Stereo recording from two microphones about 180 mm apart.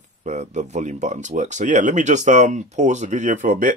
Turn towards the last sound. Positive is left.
turn(degrees=-45)  # may be behind; listen again after turning